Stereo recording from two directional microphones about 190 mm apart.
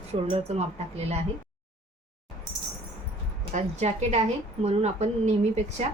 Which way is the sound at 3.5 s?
40° right (ahead or behind).